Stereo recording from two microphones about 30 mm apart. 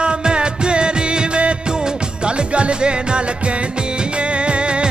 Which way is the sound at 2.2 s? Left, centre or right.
Right.